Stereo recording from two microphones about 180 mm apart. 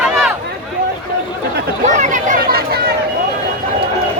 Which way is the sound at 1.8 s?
45° right (ahead or behind).